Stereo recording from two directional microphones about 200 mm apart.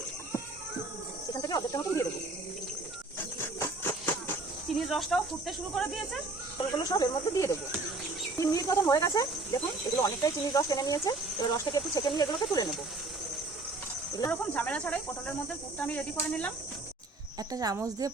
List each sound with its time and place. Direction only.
1.3 s cricket: 20° left (ahead or behind)
4.7 s speech: centre (ahead or behind)
6.6 s speech: 20° left (ahead or behind)
14.2 s speech: 10° left (ahead or behind)
17.5 s a woman's voice: 20° right (ahead or behind)